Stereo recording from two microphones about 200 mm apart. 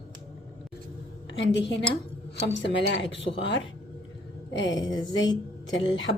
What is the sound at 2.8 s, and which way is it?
Speech, 65° left (ahead or behind).